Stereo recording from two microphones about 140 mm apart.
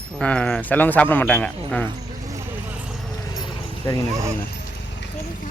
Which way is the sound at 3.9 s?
25° left (ahead or behind).